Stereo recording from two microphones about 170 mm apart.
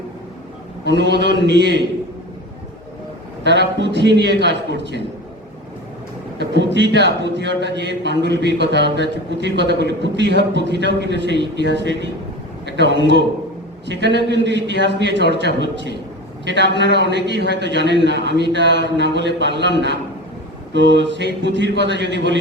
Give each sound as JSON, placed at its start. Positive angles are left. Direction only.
{"t": 0.9, "sound": "a man's voice", "side_deg": -90}
{"t": 3.4, "sound": "a man's voice", "side_deg": -90}
{"t": 6.4, "sound": "a man's voice", "side_deg": -90}